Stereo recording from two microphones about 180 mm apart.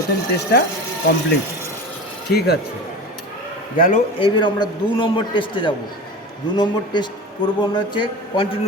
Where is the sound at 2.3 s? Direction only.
60° left (ahead or behind).